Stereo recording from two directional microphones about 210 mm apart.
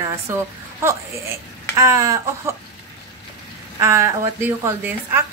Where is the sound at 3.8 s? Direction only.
15° right (ahead or behind).